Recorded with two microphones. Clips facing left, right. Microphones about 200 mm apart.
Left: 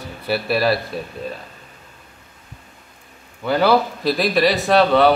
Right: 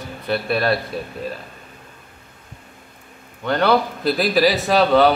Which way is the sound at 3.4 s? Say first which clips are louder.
Left 1 dB; 5° left (ahead or behind).